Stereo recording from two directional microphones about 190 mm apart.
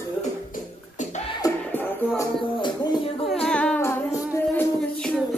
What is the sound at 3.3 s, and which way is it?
Music, 5° left (ahead or behind).